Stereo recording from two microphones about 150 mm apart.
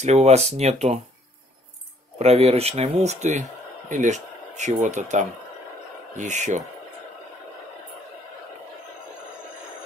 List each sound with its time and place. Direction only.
0.0 s speech: 50° right (ahead or behind)
2.1 s speech: 45° right (ahead or behind)